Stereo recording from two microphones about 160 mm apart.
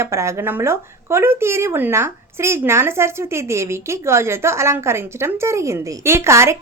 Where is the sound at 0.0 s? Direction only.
15° right (ahead or behind).